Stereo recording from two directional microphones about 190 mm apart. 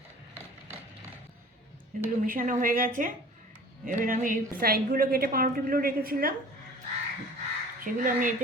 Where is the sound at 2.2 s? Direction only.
45° right (ahead or behind).